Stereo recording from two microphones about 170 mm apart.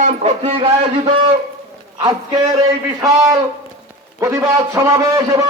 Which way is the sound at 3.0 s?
20° right (ahead or behind).